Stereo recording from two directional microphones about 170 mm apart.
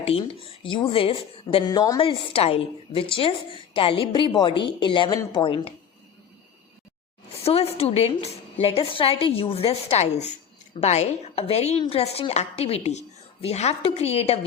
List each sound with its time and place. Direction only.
0.0 s a woman's voice: 35° left (ahead or behind)
2.0 s a woman's voice: 35° left (ahead or behind)
7.4 s a woman's voice: 35° left (ahead or behind)